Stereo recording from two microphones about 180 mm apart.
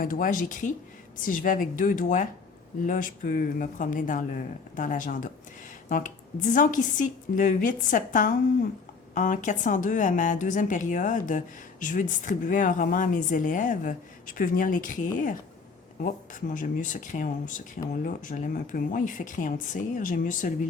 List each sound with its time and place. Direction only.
0.0 s speech: 50° left (ahead or behind)